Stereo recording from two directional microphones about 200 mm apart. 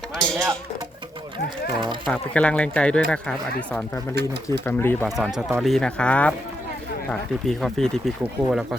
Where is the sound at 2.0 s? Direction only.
5° left (ahead or behind).